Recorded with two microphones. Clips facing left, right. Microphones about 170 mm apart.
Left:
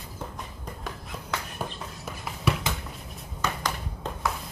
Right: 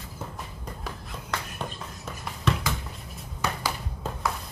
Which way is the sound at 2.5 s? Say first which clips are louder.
Even; 10° left (ahead or behind).